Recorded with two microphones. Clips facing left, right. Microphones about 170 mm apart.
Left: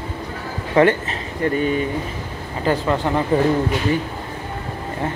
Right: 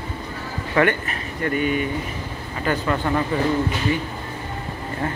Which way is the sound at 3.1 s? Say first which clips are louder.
Left 1 dB; 20° left (ahead or behind).